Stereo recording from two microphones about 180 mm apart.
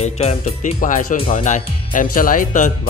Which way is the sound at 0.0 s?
35° left (ahead or behind).